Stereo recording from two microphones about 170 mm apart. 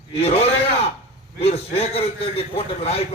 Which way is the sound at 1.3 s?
35° left (ahead or behind).